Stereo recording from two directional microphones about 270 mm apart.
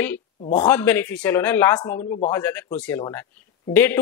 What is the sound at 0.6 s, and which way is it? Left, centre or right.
A man's voice, centre.